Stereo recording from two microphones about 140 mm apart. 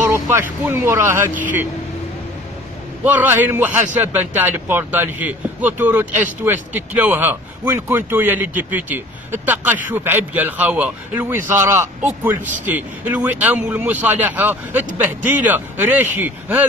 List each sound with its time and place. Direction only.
0.1 s speech: 20° right (ahead or behind)
3.0 s speech: 10° right (ahead or behind)